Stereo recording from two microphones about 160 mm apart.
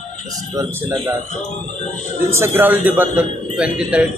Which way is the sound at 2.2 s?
15° right (ahead or behind).